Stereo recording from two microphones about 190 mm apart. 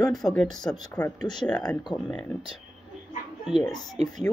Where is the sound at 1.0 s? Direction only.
20° left (ahead or behind).